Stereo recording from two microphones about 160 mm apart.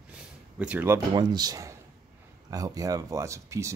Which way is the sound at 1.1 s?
25° right (ahead or behind).